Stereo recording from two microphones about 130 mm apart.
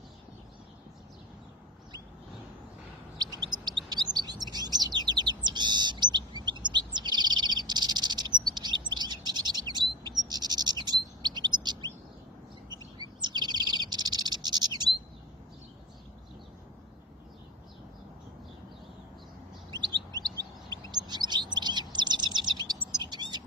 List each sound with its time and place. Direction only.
3.2 s chirp: 30° right (ahead or behind)
12.6 s bird: 35° right (ahead or behind)
19.7 s bird: 30° right (ahead or behind)
20.9 s chirp: 35° right (ahead or behind)
22.9 s bird: 35° right (ahead or behind)